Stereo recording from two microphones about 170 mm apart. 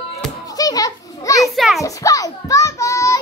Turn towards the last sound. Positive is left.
turn(degrees=20)  # may be behind; listen again after turning